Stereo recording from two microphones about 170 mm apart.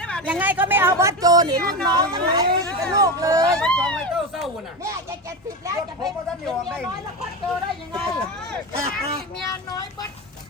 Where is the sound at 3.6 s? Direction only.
5° left (ahead or behind).